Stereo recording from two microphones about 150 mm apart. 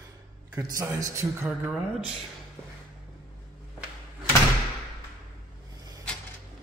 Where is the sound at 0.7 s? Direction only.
20° right (ahead or behind).